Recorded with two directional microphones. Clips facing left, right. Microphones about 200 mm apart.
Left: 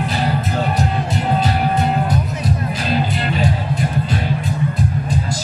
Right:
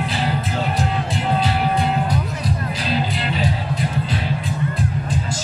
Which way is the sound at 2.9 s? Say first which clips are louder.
Left 3 dB; 50° left (ahead or behind).